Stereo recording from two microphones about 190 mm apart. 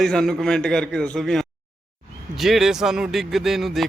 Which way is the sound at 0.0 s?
5° left (ahead or behind).